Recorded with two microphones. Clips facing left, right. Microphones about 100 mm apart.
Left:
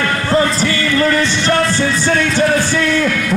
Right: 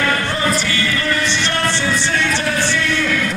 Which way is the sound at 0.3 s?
35° left (ahead or behind).